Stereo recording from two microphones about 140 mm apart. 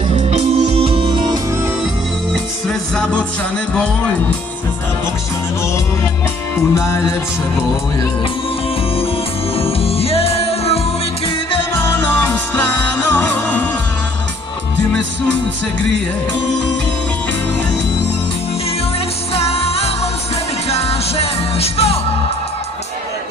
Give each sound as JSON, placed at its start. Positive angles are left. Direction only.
{"t": 0.3, "sound": "music", "side_deg": -50}
{"t": 2.7, "sound": "music", "side_deg": 5}
{"t": 6.7, "sound": "music", "side_deg": 20}
{"t": 9.6, "sound": "music", "side_deg": 45}
{"t": 12.6, "sound": "music", "side_deg": 15}
{"t": 19.3, "sound": "music", "side_deg": 45}